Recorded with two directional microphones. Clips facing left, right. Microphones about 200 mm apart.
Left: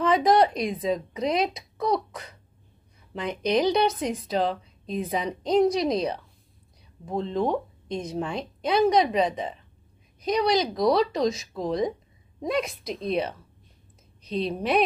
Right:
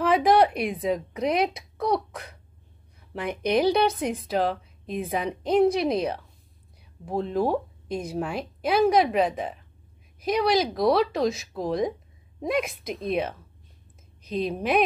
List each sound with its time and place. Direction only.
0.0 s speech: 5° right (ahead or behind)